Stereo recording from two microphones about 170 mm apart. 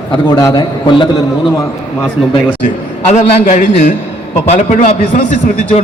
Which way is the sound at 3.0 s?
45° left (ahead or behind).